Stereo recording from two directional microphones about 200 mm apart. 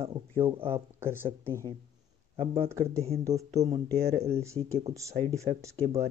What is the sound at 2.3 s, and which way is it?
Speech, 25° right (ahead or behind).